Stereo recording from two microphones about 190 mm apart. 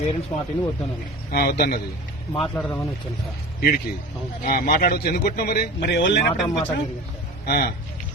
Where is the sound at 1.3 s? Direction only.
55° left (ahead or behind).